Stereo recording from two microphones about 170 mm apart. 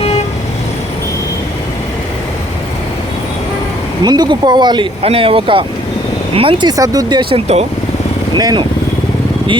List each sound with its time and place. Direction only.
4.0 s speech: 25° right (ahead or behind)
8.4 s speech: 25° right (ahead or behind)